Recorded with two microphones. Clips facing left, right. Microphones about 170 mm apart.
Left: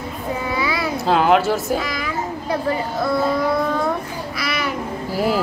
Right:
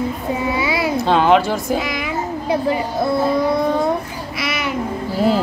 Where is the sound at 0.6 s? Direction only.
25° right (ahead or behind).